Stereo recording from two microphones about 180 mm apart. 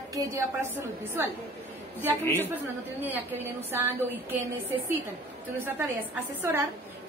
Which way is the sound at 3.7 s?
15° right (ahead or behind).